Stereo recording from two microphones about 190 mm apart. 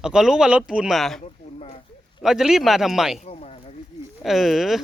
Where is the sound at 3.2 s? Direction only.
35° left (ahead or behind).